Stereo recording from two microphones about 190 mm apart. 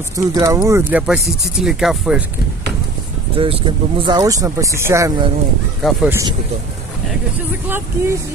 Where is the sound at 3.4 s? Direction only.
25° right (ahead or behind).